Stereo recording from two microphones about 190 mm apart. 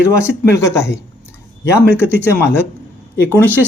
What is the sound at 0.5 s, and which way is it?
Speech, 15° left (ahead or behind).